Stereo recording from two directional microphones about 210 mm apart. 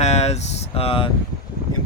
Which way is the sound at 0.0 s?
30° left (ahead or behind).